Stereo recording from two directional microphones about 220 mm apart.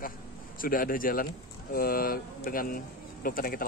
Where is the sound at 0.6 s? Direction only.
40° left (ahead or behind).